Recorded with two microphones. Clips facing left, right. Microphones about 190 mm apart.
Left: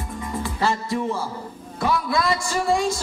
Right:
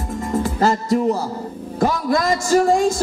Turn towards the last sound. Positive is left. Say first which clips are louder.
# right 7 dB
turn(degrees=-45)  # may be behind; listen again after turning